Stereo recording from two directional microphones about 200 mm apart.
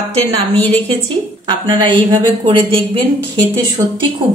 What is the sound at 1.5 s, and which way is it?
Speech, 25° right (ahead or behind).